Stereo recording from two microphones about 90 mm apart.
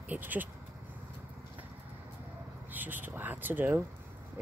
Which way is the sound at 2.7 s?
20° right (ahead or behind).